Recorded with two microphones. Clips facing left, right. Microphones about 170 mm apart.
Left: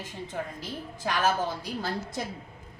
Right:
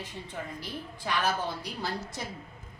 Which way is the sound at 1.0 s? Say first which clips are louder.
Left 3 dB; 45° left (ahead or behind).